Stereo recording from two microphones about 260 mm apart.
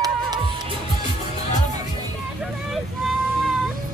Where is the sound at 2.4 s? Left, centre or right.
Centre.